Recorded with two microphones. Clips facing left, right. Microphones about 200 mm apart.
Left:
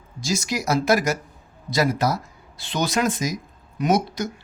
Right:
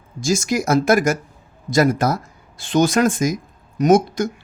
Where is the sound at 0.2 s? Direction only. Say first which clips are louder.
Right 6 dB; 50° right (ahead or behind).